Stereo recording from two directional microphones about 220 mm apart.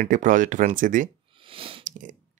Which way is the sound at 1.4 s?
25° right (ahead or behind).